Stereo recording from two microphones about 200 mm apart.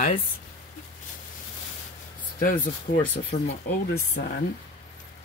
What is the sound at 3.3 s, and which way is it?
Speech, 30° left (ahead or behind).